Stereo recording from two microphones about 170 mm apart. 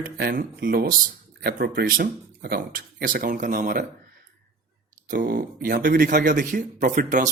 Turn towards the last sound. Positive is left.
turn(degrees=-50)  # may be behind; listen again after turning